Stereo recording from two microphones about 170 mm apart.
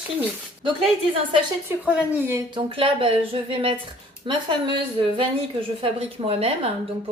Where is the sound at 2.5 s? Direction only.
35° right (ahead or behind).